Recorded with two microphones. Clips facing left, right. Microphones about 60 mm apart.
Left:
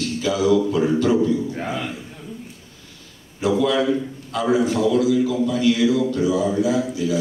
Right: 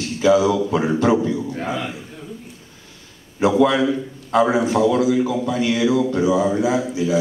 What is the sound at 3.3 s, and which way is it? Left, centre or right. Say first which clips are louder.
A man's voice: right 3 dB; right.